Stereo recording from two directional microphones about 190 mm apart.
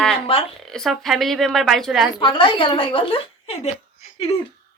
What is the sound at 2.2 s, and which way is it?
A woman's voice, 25° left (ahead or behind).